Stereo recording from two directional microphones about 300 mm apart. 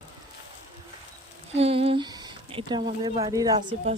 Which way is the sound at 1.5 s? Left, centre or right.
Centre.